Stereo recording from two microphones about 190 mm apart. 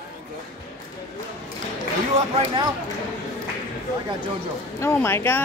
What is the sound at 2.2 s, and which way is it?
Speech, 35° right (ahead or behind).